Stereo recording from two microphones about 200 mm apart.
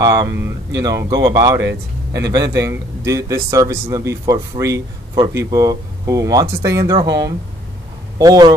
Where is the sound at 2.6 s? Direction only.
15° right (ahead or behind).